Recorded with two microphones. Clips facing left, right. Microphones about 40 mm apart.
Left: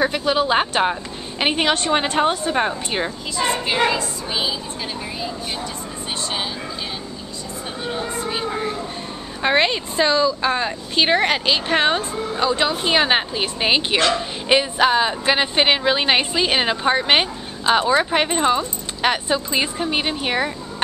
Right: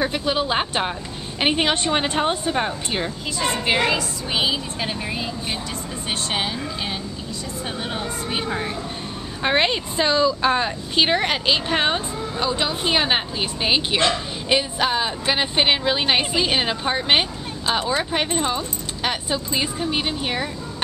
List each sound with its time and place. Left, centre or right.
0.0 s speech: centre
2.5 s speech: centre
3.9 s speech: right
7.9 s speech: right
8.5 s a woman's voice: right
9.4 s speech: centre
9.7 s speech: centre
11.1 s speech: centre